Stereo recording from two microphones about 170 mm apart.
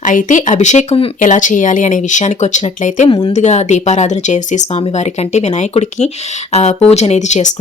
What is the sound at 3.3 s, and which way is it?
Speech, 45° left (ahead or behind).